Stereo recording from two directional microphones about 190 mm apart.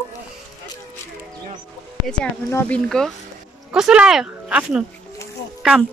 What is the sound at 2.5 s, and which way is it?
A woman's voice, 10° left (ahead or behind).